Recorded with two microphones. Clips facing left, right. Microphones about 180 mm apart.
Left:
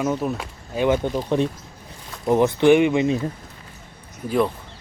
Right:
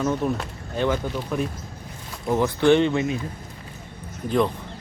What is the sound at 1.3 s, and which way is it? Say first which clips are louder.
Speech: left 5 dB; 25° left (ahead or behind).